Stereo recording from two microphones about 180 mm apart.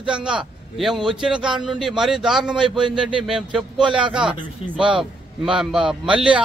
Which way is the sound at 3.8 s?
25° right (ahead or behind).